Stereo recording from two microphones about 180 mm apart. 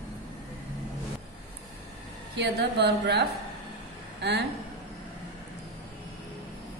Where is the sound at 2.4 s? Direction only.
65° right (ahead or behind).